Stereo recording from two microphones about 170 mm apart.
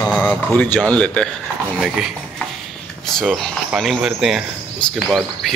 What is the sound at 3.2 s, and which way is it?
Speech, centre (ahead or behind).